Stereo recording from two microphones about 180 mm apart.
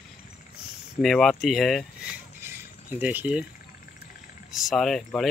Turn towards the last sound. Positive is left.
turn(degrees=0)  # may be behind; listen again after turning